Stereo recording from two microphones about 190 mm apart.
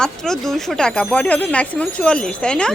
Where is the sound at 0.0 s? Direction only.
Centre (ahead or behind).